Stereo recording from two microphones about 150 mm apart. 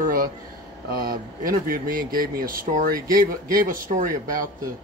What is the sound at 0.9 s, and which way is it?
Speech, 75° right (ahead or behind).